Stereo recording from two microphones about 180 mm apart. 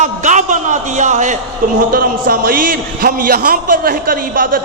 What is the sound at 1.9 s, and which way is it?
A man's voice, 55° right (ahead or behind).